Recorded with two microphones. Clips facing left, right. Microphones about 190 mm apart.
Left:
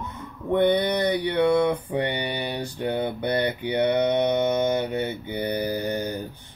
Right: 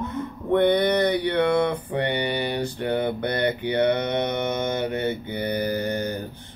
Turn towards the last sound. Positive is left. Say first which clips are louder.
# right 1 dB
turn(degrees=15)  # may be behind; listen again after turning